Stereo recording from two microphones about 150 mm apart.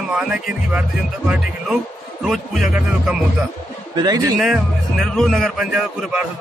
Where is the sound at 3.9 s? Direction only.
30° right (ahead or behind).